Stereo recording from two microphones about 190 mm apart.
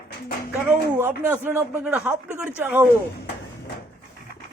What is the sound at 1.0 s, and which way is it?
Speech, 10° right (ahead or behind).